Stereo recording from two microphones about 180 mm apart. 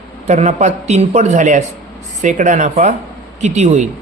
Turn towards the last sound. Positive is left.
turn(degrees=-40)  # may be behind; listen again after turning